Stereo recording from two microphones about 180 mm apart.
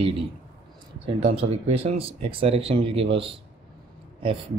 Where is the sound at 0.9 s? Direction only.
30° right (ahead or behind).